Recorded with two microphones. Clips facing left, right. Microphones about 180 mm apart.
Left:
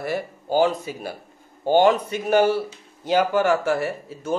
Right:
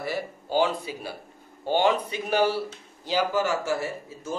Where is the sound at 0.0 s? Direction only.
50° left (ahead or behind).